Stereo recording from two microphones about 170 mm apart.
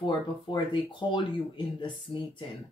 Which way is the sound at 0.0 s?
30° left (ahead or behind).